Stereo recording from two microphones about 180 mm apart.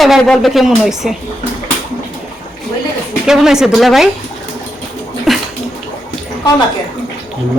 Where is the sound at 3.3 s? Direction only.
5° right (ahead or behind).